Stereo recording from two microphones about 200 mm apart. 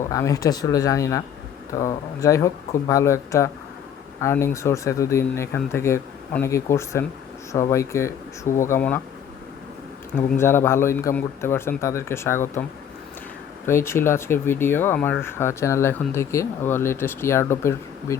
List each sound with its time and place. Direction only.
0.1 s speech: 15° left (ahead or behind)
10.2 s speech: 10° left (ahead or behind)
13.7 s speech: 15° left (ahead or behind)